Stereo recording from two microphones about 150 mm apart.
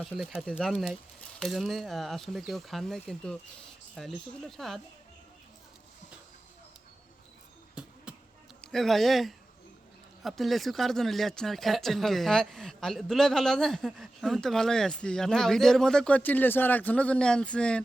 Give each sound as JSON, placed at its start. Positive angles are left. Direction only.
{"t": 0.2, "sound": "speech", "side_deg": 0}
{"t": 7.8, "sound": "a sound", "side_deg": -5}
{"t": 8.6, "sound": "speech", "side_deg": 0}